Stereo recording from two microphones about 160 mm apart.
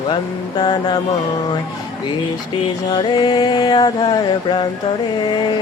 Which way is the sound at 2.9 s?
30° left (ahead or behind).